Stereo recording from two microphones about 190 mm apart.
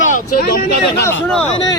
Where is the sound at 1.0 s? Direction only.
10° left (ahead or behind).